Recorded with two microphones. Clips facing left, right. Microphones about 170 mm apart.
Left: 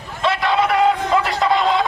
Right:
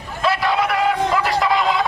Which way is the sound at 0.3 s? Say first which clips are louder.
Left 4 dB; 25° left (ahead or behind).